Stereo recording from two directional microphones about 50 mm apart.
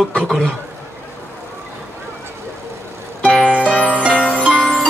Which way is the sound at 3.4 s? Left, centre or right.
Centre.